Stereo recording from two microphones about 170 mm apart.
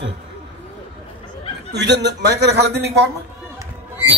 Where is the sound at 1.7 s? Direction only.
90° right.